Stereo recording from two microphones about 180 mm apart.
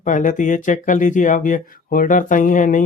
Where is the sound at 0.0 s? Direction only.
45° left (ahead or behind).